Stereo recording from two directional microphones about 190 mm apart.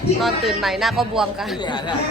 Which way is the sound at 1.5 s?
25° left (ahead or behind).